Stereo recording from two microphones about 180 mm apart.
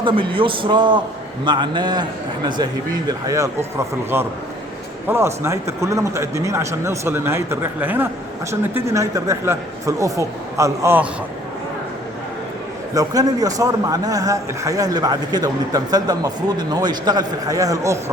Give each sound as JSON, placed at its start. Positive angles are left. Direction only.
{"t": 0.0, "sound": "a man's voice", "side_deg": -25}
{"t": 12.9, "sound": "a man's voice", "side_deg": -20}